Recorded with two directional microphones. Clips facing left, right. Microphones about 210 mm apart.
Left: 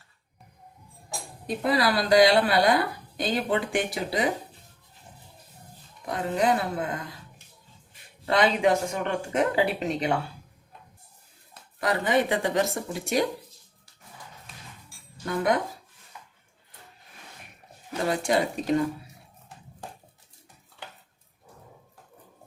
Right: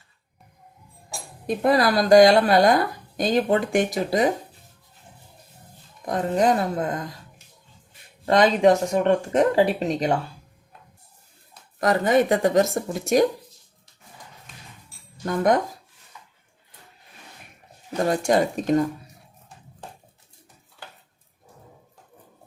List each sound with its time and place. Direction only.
1.5 s a woman's voice: 45° right (ahead or behind)
6.1 s a woman's voice: 40° right (ahead or behind)
8.3 s speech: 40° right (ahead or behind)
11.8 s a woman's voice: 45° right (ahead or behind)
15.2 s a woman's voice: 45° right (ahead or behind)
18.1 s a woman's voice: 45° right (ahead or behind)